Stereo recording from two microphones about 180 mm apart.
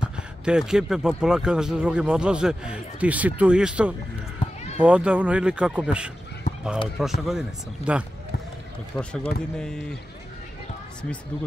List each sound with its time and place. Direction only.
0.0 s speech: 5° right (ahead or behind)
4.4 s run: 30° left (ahead or behind)
4.7 s speech: 5° right (ahead or behind)
6.5 s a sound: 45° left (ahead or behind)
7.0 s speech: centre (ahead or behind)
8.9 s speech: 10° left (ahead or behind)